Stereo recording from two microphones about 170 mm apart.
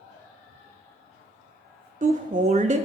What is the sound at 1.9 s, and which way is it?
Speech, 45° right (ahead or behind).